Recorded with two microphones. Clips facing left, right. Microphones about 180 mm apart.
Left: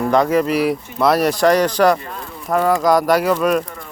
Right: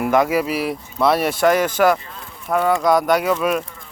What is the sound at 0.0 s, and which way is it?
Speech, 5° right (ahead or behind).